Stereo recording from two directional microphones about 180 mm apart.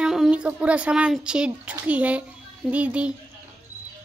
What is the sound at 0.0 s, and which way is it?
A child's voice, 5° right (ahead or behind).